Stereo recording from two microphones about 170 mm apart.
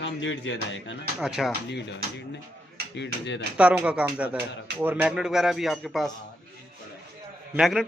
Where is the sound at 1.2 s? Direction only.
Centre (ahead or behind).